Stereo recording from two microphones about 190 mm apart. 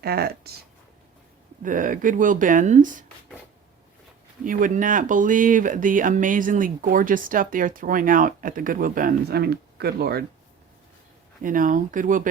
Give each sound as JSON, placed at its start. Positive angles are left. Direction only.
{"t": 0.0, "sound": "speech", "side_deg": -55}
{"t": 1.6, "sound": "speech", "side_deg": -45}
{"t": 4.4, "sound": "speech", "side_deg": -45}
{"t": 11.4, "sound": "speech", "side_deg": -45}